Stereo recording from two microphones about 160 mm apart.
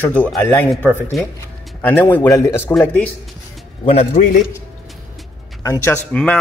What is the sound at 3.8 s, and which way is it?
Speech, 45° left (ahead or behind).